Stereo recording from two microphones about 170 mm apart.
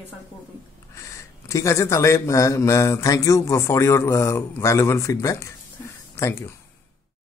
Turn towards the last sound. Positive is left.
turn(degrees=15)  # may be behind; listen again after turning